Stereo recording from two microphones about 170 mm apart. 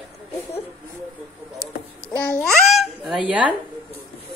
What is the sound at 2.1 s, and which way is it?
A child's voice, 5° left (ahead or behind).